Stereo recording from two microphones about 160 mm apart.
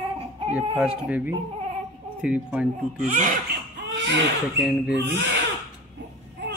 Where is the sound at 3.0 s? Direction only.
55° right (ahead or behind).